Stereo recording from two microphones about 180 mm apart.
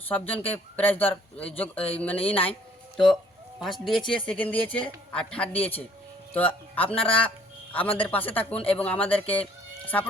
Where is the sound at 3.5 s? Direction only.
Centre (ahead or behind).